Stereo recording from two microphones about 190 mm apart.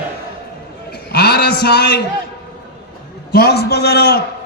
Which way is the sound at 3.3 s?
55° left (ahead or behind).